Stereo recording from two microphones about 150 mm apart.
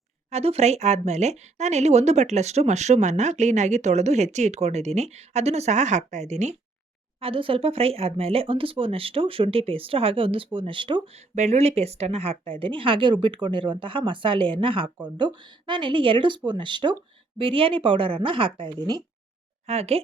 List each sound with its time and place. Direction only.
0.3 s speech: 45° right (ahead or behind)
7.2 s speech: 35° right (ahead or behind)
19.6 s speech: 45° right (ahead or behind)